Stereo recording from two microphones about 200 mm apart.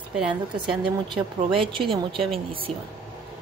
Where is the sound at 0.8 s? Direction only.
25° right (ahead or behind).